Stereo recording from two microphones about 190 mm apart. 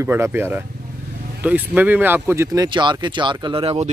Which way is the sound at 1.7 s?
10° right (ahead or behind).